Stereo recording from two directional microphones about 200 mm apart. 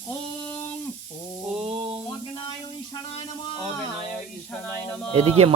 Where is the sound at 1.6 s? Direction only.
30° right (ahead or behind).